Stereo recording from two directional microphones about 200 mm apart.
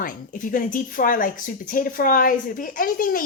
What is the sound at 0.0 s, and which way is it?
Speech, 45° left (ahead or behind).